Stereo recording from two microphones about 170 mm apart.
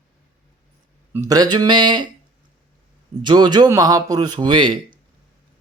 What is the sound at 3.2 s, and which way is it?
A man's voice, 25° right (ahead or behind).